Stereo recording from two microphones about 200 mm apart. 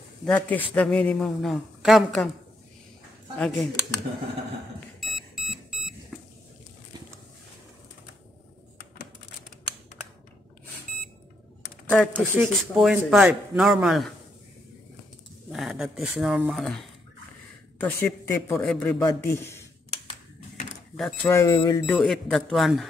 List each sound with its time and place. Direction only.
0.2 s a man's voice: 5° left (ahead or behind)
3.3 s a man's voice: 5° left (ahead or behind)
4.7 s alarm clock: centre (ahead or behind)
11.9 s a man's voice: 5° left (ahead or behind)
15.5 s a man's voice: centre (ahead or behind)
17.8 s a man's voice: 10° left (ahead or behind)
20.9 s a man's voice: centre (ahead or behind)
21.3 s speech: 20° left (ahead or behind)
21.8 s a man's voice: 5° left (ahead or behind)